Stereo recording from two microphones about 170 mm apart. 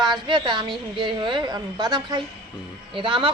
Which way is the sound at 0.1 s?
25° right (ahead or behind).